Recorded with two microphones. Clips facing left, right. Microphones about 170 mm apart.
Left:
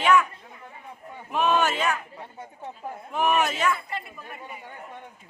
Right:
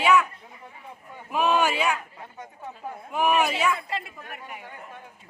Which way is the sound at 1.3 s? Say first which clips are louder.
Even; 10° right (ahead or behind).